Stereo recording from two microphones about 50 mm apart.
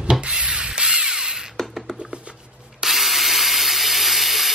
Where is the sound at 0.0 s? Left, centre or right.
Centre.